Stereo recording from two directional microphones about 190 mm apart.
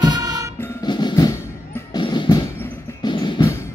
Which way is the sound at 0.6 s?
20° left (ahead or behind).